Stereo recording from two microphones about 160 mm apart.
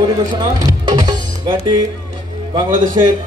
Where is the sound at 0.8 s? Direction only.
30° right (ahead or behind).